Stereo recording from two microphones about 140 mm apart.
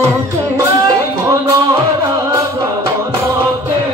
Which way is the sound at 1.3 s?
20° right (ahead or behind).